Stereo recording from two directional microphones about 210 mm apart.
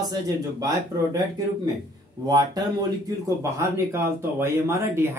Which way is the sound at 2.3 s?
20° right (ahead or behind).